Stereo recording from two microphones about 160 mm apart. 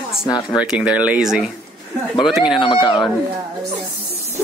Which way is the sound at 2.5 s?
30° left (ahead or behind).